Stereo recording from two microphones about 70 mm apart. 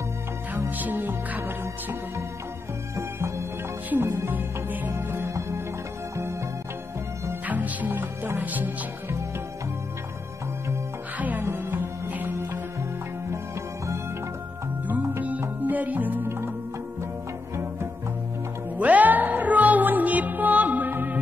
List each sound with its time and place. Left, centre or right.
0.6 s music: right
3.0 s music: right
3.9 s music: right
7.4 s music: right
11.1 s music: right
14.9 s music: right
18.8 s music: right